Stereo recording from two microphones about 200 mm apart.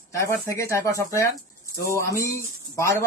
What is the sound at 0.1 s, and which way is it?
Speech, 15° left (ahead or behind).